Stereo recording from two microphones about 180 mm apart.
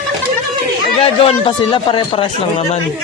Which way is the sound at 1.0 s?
30° left (ahead or behind).